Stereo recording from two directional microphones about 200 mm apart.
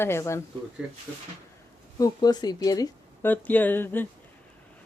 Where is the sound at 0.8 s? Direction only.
5° right (ahead or behind).